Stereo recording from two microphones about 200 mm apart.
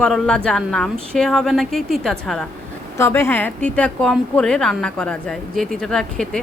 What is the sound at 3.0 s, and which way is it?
A woman's voice, 10° left (ahead or behind).